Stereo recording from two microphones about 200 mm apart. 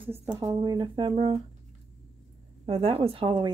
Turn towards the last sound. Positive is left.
turn(degrees=-25)  # may be behind; listen again after turning